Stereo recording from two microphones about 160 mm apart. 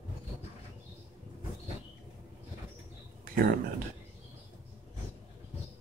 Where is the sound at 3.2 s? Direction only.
65° right (ahead or behind).